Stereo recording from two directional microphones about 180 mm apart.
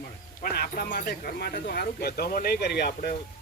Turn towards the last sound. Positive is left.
turn(degrees=65)  # may be behind; listen again after turning